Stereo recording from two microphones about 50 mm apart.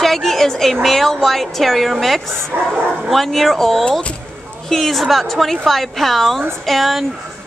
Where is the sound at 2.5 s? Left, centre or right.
Right.